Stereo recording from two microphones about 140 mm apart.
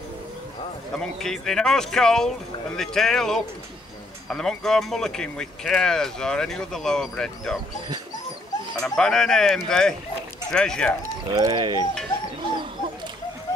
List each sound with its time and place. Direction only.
0.9 s speech: 5° left (ahead or behind)
8.7 s speech: 5° left (ahead or behind)
11.3 s speech: 30° right (ahead or behind)